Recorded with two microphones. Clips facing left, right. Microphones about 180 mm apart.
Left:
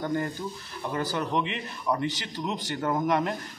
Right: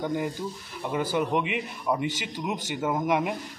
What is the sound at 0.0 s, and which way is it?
Speech, 10° right (ahead or behind).